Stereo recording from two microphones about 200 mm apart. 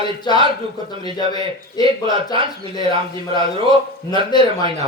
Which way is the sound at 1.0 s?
20° left (ahead or behind).